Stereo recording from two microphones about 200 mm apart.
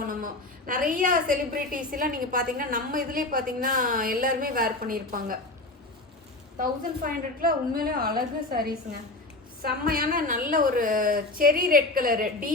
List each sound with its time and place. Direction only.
0.0 s a sound: 45° right (ahead or behind)
0.7 s a woman's voice: 45° right (ahead or behind)
6.6 s a woman's voice: 45° right (ahead or behind)